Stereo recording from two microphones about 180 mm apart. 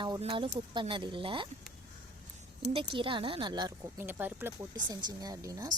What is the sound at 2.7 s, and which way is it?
Speech, 30° right (ahead or behind).